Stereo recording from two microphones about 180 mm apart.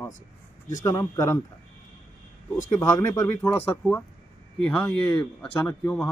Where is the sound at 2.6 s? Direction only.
20° left (ahead or behind).